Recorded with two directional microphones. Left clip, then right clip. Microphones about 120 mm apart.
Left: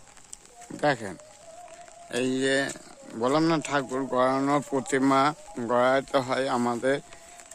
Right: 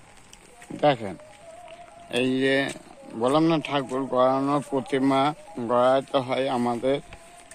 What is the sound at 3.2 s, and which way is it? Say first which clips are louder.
Speech: right 2 dB; 45° left (ahead or behind).